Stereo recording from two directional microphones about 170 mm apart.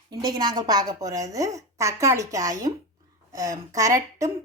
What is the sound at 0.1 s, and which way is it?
Speech, 25° right (ahead or behind).